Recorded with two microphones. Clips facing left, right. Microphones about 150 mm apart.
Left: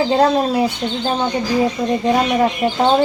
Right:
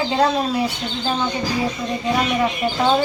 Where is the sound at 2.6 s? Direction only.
40° left (ahead or behind).